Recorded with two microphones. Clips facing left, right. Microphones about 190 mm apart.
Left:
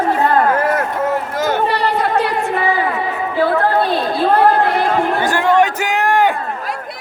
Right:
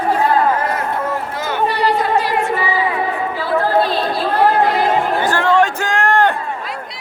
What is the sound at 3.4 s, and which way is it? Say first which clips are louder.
Chatter: left 5 dB; 55° left (ahead or behind).